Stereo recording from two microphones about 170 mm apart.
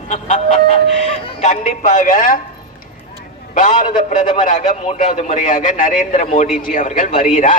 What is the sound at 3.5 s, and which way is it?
A man's voice, 50° left (ahead or behind).